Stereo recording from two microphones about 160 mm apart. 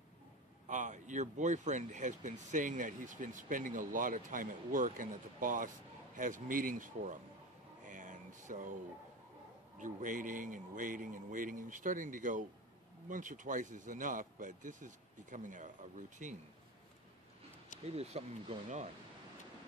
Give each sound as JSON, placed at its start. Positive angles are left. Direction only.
{"t": 0.7, "sound": "speech", "side_deg": -50}
{"t": 7.8, "sound": "a sound", "side_deg": -55}
{"t": 9.8, "sound": "speech", "side_deg": -55}
{"t": 17.8, "sound": "speech", "side_deg": -40}